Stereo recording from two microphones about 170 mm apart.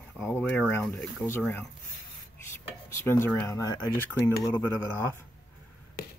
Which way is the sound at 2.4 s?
15° left (ahead or behind).